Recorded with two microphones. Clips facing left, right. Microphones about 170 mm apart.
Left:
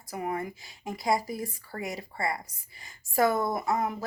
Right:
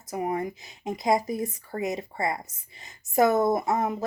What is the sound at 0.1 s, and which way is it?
Speech, 20° right (ahead or behind).